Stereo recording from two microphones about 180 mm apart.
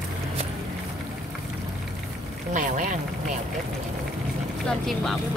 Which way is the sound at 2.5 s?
45° right (ahead or behind).